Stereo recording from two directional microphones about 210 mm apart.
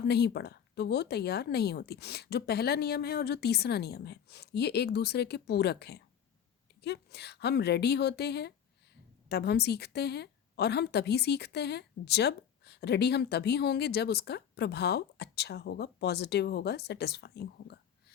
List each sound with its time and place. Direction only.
0.1 s a woman's voice: 50° left (ahead or behind)